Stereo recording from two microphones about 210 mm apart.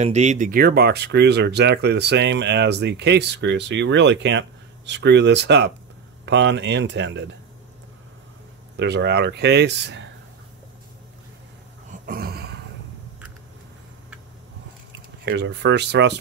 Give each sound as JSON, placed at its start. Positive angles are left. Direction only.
{"t": 0.0, "sound": "speech", "side_deg": -35}
{"t": 8.7, "sound": "speech", "side_deg": -55}
{"t": 11.9, "sound": "a sound", "side_deg": -45}
{"t": 15.2, "sound": "speech", "side_deg": -60}